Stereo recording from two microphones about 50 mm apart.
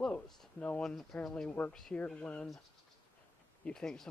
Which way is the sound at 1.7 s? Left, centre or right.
Centre.